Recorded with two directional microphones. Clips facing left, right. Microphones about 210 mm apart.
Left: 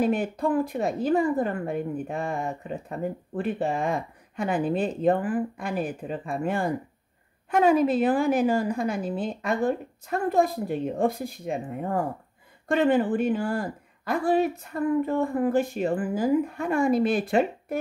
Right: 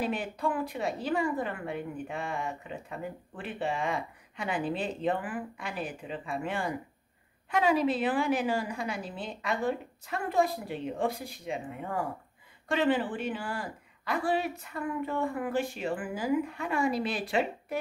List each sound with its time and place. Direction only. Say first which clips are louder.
0.0 s a woman's voice: left 7 dB; 45° left (ahead or behind)